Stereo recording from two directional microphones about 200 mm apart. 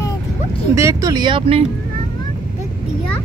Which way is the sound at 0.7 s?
15° right (ahead or behind).